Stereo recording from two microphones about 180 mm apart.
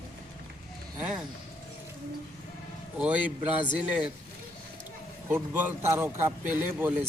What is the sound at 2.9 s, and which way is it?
A man's voice, 5° right (ahead or behind).